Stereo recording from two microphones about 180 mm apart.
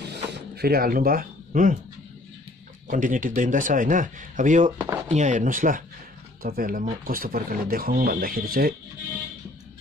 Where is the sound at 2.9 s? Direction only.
45° right (ahead or behind).